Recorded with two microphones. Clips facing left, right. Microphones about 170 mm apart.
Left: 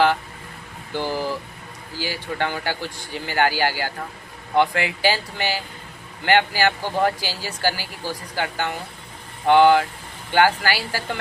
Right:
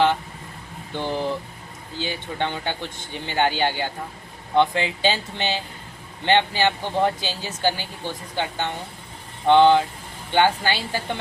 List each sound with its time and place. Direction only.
0.9 s speech: 25° right (ahead or behind)